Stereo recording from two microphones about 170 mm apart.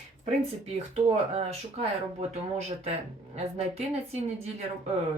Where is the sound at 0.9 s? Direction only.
40° right (ahead or behind).